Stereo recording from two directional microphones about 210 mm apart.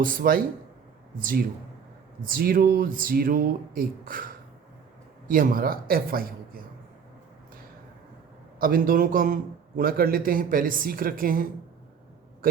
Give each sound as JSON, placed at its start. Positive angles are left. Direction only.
{"t": 0.0, "sound": "a man's voice", "side_deg": -40}
{"t": 5.3, "sound": "a man's voice", "side_deg": -40}
{"t": 8.5, "sound": "a man's voice", "side_deg": -45}